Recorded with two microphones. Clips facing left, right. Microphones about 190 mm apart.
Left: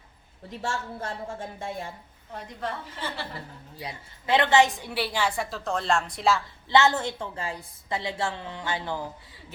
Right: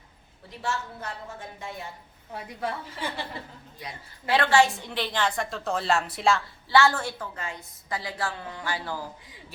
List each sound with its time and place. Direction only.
0.6 s a woman's voice: 30° left (ahead or behind)
2.3 s a woman's voice: 10° right (ahead or behind)
3.8 s a woman's voice: 25° left (ahead or behind); by 6.4 s centre (ahead or behind)
6.7 s a woman's voice: 20° left (ahead or behind)